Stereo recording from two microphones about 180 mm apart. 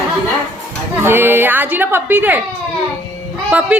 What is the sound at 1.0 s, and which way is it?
A woman's voice, 10° right (ahead or behind).